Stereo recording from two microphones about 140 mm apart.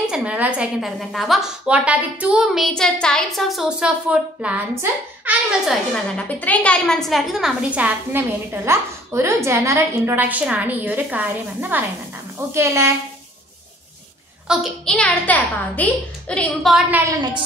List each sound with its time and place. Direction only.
0.0 s a woman's voice: 5° right (ahead or behind)
5.7 s a woman's voice: 10° left (ahead or behind); by 12.9 s 20° right (ahead or behind)
14.5 s a woman's voice: centre (ahead or behind)
15.0 s a woman's voice: 10° left (ahead or behind)
17.0 s a woman's voice: 30° right (ahead or behind)